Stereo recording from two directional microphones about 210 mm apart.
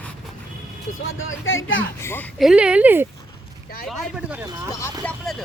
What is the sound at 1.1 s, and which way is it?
Speech, 70° left (ahead or behind).